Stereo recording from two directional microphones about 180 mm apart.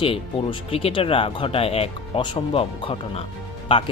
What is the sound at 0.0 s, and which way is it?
Speech, 30° left (ahead or behind).